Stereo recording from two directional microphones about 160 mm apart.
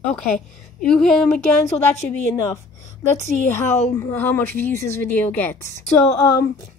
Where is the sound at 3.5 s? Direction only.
15° left (ahead or behind).